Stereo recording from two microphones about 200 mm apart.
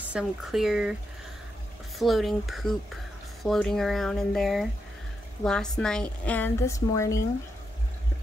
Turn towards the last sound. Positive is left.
turn(degrees=15)  # may be behind; listen again after turning